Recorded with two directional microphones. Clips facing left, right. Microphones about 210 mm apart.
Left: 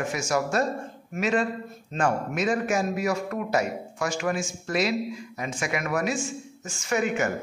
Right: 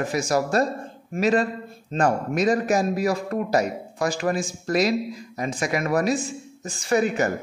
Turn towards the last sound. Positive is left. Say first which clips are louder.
# right 4 dB
turn(degrees=-35)  # may be behind; listen again after turning